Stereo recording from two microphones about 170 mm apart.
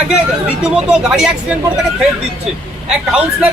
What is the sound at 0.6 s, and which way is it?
Speech, 5° right (ahead or behind).